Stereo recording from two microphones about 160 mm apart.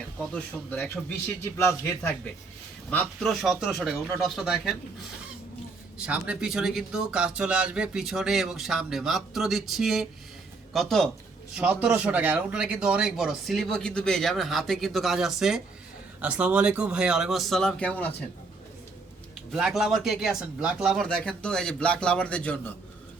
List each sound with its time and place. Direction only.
0.2 s speech: 5° left (ahead or behind)
1.5 s a man's voice: 15° left (ahead or behind)
2.9 s speech: 5° left (ahead or behind)
6.0 s speech: 10° right (ahead or behind); by 18.3 s 10° left (ahead or behind)
19.5 s speech: 5° right (ahead or behind)